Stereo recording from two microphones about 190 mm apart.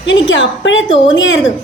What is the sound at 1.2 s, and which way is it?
Speech, 80° left.